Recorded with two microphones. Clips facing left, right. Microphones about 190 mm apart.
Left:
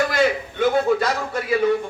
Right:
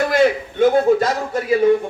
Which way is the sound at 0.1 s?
50° right (ahead or behind).